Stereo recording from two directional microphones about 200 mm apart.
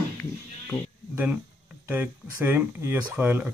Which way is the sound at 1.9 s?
10° right (ahead or behind).